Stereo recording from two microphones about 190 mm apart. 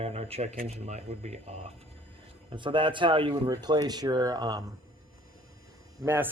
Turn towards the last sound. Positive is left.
turn(degrees=-10)  # may be behind; listen again after turning